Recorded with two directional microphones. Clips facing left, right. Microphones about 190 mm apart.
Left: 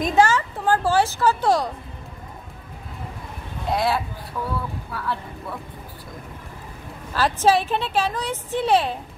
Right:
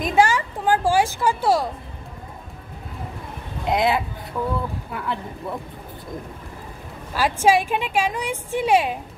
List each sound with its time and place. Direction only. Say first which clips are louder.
0.0 s a woman's voice: even; 10° right (ahead or behind)
3.6 s speech: right 2 dB; 20° right (ahead or behind)
7.2 s a woman's voice: right 1 dB; 10° right (ahead or behind)